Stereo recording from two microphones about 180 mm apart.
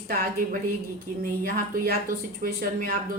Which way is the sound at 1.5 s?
55° right (ahead or behind).